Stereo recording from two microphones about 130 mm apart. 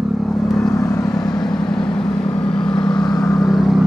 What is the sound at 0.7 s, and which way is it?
Vehicle, 25° left (ahead or behind).